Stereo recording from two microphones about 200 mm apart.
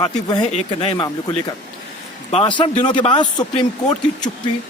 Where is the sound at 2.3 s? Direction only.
25° left (ahead or behind).